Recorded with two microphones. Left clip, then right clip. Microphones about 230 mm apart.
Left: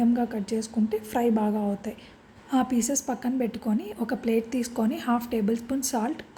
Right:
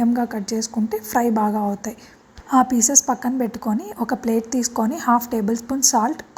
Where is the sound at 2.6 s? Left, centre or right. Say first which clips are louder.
Right 9 dB; centre.